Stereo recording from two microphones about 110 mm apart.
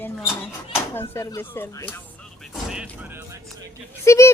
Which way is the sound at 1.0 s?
25° left (ahead or behind).